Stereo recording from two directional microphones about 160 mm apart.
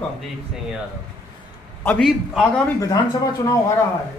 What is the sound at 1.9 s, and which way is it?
Speech, centre (ahead or behind).